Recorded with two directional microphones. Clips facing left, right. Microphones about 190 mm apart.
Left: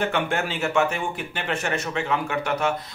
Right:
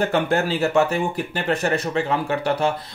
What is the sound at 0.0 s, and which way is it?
Speech, 35° right (ahead or behind).